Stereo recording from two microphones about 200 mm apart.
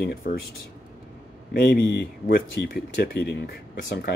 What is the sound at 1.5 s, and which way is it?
Speech, 50° left (ahead or behind).